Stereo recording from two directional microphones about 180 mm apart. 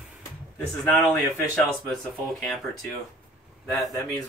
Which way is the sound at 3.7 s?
15° left (ahead or behind).